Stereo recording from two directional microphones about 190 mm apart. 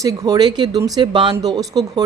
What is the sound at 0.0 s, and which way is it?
Speech, 20° right (ahead or behind).